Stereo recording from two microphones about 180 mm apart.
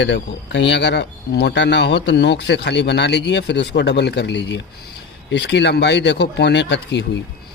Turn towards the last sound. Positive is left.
turn(degrees=75)  # may be behind; listen again after turning